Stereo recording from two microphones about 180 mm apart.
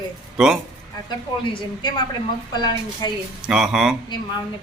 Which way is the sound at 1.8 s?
25° left (ahead or behind).